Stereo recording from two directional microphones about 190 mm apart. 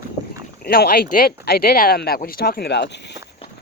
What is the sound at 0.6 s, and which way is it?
Speech, 50° left (ahead or behind).